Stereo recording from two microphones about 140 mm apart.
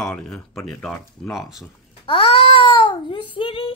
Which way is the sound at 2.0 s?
45° left (ahead or behind).